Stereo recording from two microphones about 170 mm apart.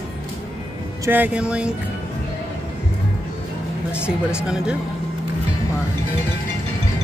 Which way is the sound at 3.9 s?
5° right (ahead or behind).